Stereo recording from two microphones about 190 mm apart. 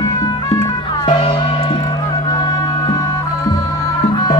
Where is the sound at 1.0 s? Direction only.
30° left (ahead or behind).